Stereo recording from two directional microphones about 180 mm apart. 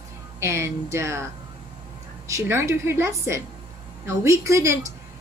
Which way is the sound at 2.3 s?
15° right (ahead or behind).